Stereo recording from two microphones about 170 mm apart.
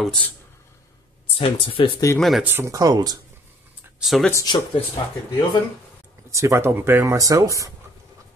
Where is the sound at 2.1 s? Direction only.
Centre (ahead or behind).